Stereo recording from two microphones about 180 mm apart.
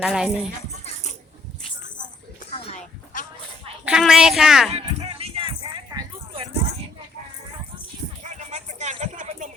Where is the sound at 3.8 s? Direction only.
5° right (ahead or behind).